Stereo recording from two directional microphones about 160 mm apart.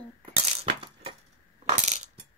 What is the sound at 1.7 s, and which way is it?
Coin, 45° right (ahead or behind).